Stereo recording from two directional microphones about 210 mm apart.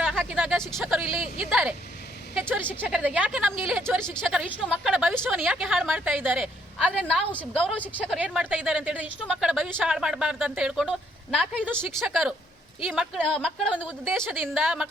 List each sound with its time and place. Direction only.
0.0 s a sound: centre (ahead or behind)
1.4 s speech: centre (ahead or behind)
2.8 s speech: 5° right (ahead or behind)
7.3 s speech: 5° left (ahead or behind)
8.2 s speech: 5° right (ahead or behind)